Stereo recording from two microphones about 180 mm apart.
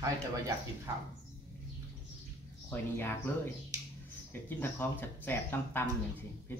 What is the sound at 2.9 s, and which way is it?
Speech, 10° left (ahead or behind).